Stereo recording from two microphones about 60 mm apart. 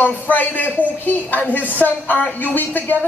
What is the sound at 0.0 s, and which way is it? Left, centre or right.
Speech, left.